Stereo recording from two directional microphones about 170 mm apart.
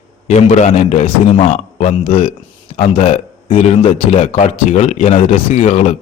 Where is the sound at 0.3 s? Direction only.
40° left (ahead or behind).